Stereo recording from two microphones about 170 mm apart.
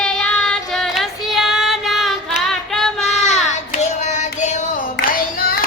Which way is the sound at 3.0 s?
40° left (ahead or behind).